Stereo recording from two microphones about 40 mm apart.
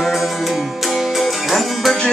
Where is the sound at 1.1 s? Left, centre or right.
Centre.